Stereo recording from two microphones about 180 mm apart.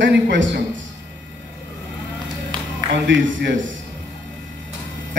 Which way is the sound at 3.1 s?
90° right.